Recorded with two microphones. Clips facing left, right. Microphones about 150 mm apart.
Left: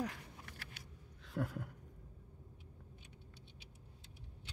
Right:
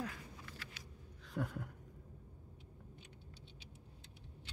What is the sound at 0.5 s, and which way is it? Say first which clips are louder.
Vehicle: right 1 dB; 60° left (ahead or behind).